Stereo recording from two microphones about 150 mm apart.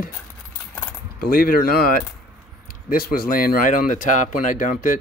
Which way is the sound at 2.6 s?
80° left.